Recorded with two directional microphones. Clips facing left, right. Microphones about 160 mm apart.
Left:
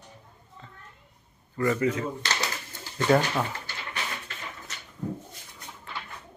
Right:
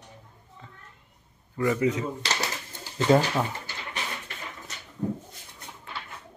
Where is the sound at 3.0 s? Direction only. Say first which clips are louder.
Right 1 dB; 10° right (ahead or behind).